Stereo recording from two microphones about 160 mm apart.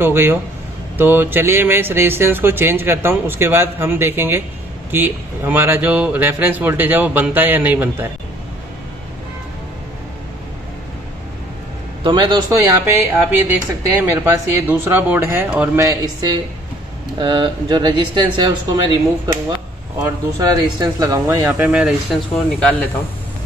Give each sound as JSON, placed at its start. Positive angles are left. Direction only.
{"t": 0.0, "sound": "speech", "side_deg": -15}
{"t": 12.0, "sound": "speech", "side_deg": -30}
{"t": 21.5, "sound": "speech", "side_deg": -10}